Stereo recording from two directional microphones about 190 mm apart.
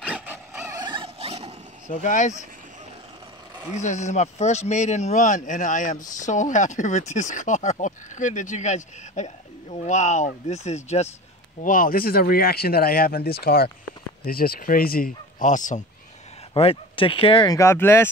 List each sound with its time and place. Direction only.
0.0 s vehicle: 5° right (ahead or behind)
0.7 s dog: 25° right (ahead or behind)
1.9 s speech: 40° left (ahead or behind)
3.7 s speech: 40° left (ahead or behind)
16.5 s speech: 30° left (ahead or behind); by 18.0 s 10° left (ahead or behind)